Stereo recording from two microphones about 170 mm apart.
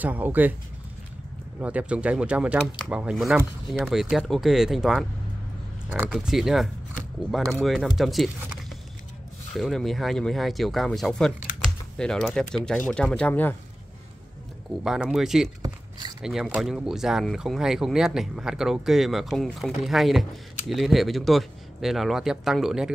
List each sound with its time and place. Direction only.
0.0 s speech: 10° right (ahead or behind)
1.6 s speech: 10° right (ahead or behind)
6.0 s speech: centre (ahead or behind)
9.6 s speech: centre (ahead or behind)
14.8 s speech: 5° right (ahead or behind)
15.6 s a sound: 20° right (ahead or behind)
16.2 s speech: 5° right (ahead or behind)